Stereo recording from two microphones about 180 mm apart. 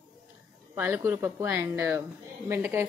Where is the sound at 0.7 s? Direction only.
10° right (ahead or behind).